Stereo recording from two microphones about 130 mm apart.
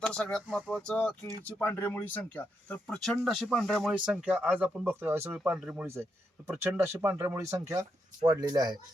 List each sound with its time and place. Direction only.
0.0 s speech: 10° left (ahead or behind); by 5.4 s 20° right (ahead or behind)
5.4 s speech: 5° right (ahead or behind)
5.8 s speech: 20° right (ahead or behind)